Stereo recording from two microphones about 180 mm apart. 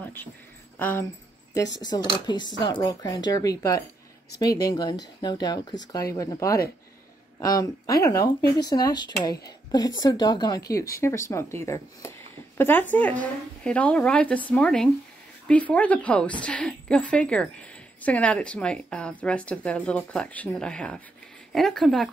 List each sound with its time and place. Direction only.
0.0 s a sound: 10° left (ahead or behind)
0.7 s speech: 10° left (ahead or behind)
1.8 s a woman's voice: 25° left (ahead or behind); by 22.1 s centre (ahead or behind)